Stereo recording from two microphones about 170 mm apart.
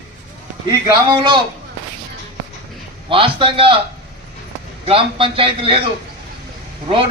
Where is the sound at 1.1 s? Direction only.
25° right (ahead or behind).